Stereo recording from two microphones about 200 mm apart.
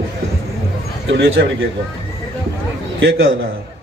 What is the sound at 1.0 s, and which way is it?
Speech, 65° right (ahead or behind).